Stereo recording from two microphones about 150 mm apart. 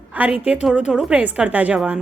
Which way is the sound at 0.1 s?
10° right (ahead or behind).